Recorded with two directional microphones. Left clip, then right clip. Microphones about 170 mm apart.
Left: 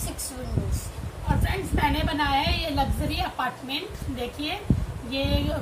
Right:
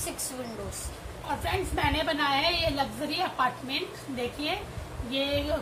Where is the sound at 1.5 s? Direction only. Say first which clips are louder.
Left 2 dB; centre (ahead or behind).